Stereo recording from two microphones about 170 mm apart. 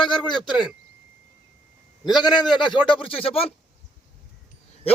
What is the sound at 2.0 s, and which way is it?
A man's voice, 25° left (ahead or behind).